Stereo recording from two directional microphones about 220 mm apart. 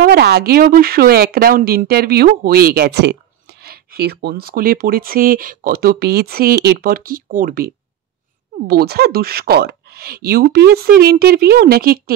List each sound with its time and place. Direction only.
0.0 s speech: 45° right (ahead or behind)